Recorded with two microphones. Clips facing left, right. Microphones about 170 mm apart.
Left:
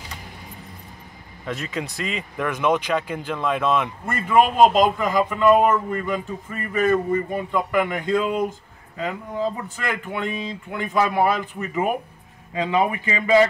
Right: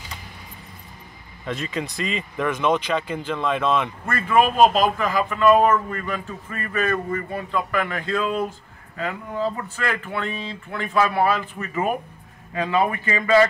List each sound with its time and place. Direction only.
1.4 s speech: 5° left (ahead or behind)